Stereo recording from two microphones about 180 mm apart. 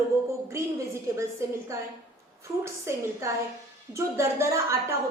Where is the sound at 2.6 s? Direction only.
15° right (ahead or behind).